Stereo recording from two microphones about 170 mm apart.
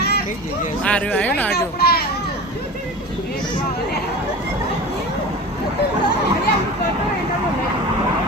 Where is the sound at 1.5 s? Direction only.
65° left (ahead or behind).